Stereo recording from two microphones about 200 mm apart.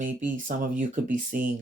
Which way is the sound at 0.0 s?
40° right (ahead or behind).